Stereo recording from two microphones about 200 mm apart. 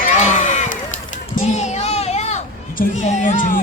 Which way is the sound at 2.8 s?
35° left (ahead or behind).